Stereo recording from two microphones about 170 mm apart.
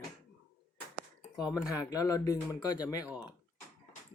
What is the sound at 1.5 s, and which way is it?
Speech, 20° left (ahead or behind).